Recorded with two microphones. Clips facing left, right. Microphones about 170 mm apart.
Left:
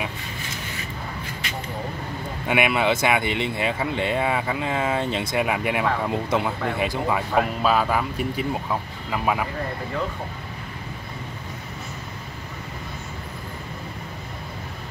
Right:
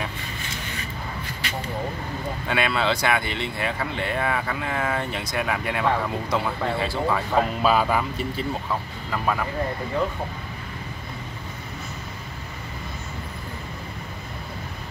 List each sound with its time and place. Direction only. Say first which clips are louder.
2.4 s speech: left 3 dB; 15° left (ahead or behind)
7.6 s speech: even; centre (ahead or behind)
8.2 s speech: left 2 dB; 10° left (ahead or behind)